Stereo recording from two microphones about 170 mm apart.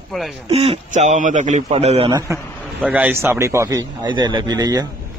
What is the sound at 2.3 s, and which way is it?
Speech, 10° right (ahead or behind).